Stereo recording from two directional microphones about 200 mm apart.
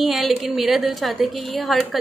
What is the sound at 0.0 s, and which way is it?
A woman's voice, centre (ahead or behind).